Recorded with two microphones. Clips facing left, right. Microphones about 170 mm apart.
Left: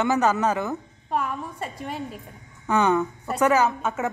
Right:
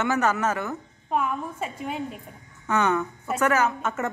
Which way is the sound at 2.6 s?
15° left (ahead or behind).